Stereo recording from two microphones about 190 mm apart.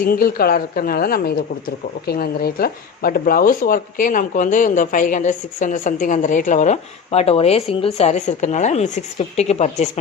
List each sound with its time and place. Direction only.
0.0 s speech: 50° left (ahead or behind)